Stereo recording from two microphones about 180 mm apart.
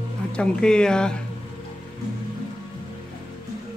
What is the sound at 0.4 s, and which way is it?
Speech, 5° left (ahead or behind).